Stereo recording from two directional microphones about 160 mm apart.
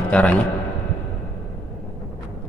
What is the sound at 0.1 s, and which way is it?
Speech, 10° left (ahead or behind).